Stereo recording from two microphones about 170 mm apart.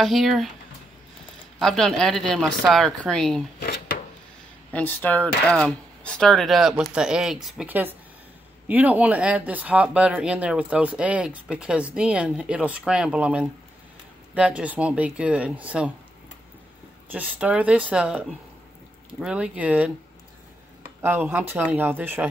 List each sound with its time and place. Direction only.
0.0 s speech: centre (ahead or behind)
1.6 s speech: centre (ahead or behind)
3.5 s drawer open or close: 70° left (ahead or behind)
4.7 s speech: 10° left (ahead or behind); by 15.9 s 5° right (ahead or behind)
17.1 s speech: 10° right (ahead or behind)
21.0 s speech: 10° right (ahead or behind)